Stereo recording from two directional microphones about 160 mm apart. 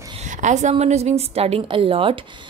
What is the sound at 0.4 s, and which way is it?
A woman's voice, 50° right (ahead or behind).